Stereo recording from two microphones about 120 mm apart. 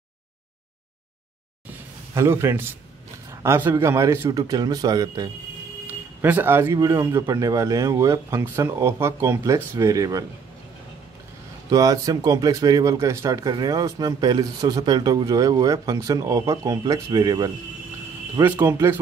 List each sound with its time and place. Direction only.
1.7 s a sound: 20° right (ahead or behind)
3.3 s speech: 20° right (ahead or behind)
5.9 s speech: 15° right (ahead or behind)
11.7 s speech: 30° right (ahead or behind)